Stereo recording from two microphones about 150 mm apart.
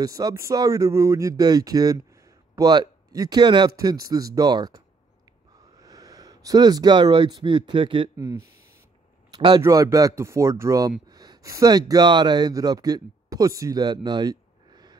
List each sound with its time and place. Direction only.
0.0 s speech: 25° right (ahead or behind)
9.3 s a sound: 30° right (ahead or behind)
9.6 s speech: 20° right (ahead or behind)